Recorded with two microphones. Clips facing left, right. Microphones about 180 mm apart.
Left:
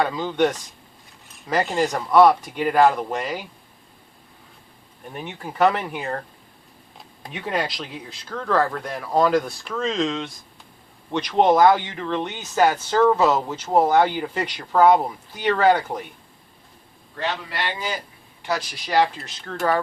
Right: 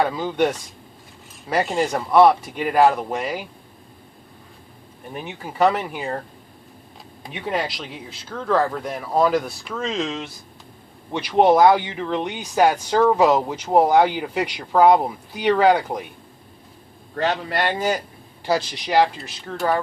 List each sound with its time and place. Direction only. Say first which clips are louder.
0.0 s speech: right 1 dB; 5° right (ahead or behind)
5.1 s speech: right 1 dB; 5° right (ahead or behind)
7.2 s speech: right 1 dB; centre (ahead or behind)
17.2 s a man's voice: right 5 dB; 50° right (ahead or behind)
18.4 s speech: right 5 dB; 30° right (ahead or behind)
18.9 s speech: right 2 dB; 10° right (ahead or behind)